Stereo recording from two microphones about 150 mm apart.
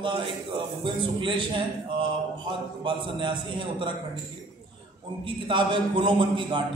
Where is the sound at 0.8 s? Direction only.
35° right (ahead or behind).